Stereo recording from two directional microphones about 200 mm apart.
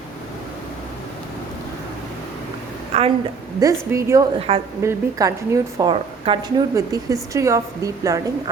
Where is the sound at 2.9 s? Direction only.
30° right (ahead or behind).